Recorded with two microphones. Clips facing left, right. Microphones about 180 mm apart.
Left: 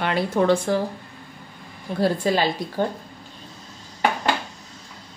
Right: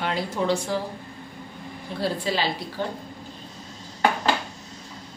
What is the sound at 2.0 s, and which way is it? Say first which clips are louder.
Speech: left 5 dB; 50° left (ahead or behind).